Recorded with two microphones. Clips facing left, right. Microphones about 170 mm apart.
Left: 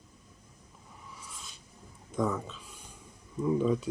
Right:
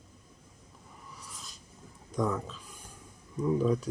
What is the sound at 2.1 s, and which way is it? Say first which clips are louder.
Speech: even; centre (ahead or behind).